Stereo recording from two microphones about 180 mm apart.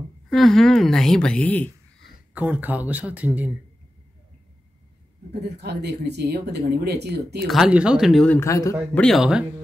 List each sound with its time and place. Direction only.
0.3 s a woman's voice: centre (ahead or behind)
2.3 s speech: 10° right (ahead or behind)
5.6 s speech: 65° right (ahead or behind)
7.4 s speech: centre (ahead or behind)
8.4 s speech: 15° left (ahead or behind)
9.0 s speech: centre (ahead or behind)